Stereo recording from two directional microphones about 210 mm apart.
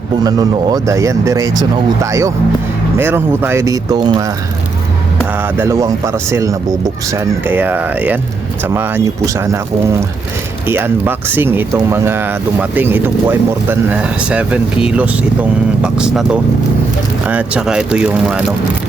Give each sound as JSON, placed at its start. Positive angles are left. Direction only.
{"t": 0.2, "sound": "speech", "side_deg": -20}
{"t": 5.4, "sound": "speech", "side_deg": -10}
{"t": 10.7, "sound": "speech", "side_deg": -10}